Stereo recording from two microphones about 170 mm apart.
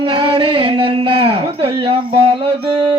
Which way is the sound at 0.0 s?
30° right (ahead or behind).